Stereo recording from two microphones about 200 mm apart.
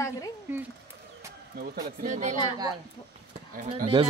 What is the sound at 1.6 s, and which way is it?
Speech, 40° right (ahead or behind).